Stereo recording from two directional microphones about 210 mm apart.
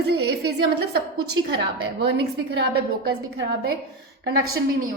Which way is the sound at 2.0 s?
50° right (ahead or behind).